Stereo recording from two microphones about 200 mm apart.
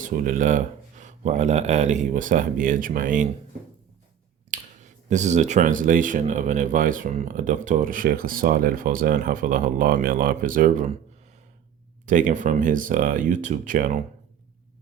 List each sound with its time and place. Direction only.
0.0 s speech: 40° right (ahead or behind)
4.5 s a sound: 35° right (ahead or behind)
5.0 s speech: 35° right (ahead or behind)
12.0 s speech: 40° right (ahead or behind)